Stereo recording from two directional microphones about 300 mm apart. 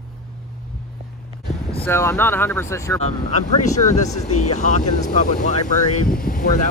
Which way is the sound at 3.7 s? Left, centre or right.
Left.